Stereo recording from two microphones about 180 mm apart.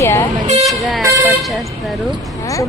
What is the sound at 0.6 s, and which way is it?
Speech, centre (ahead or behind).